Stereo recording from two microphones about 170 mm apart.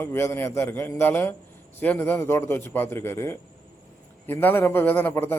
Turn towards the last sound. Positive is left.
turn(degrees=10)  # may be behind; listen again after turning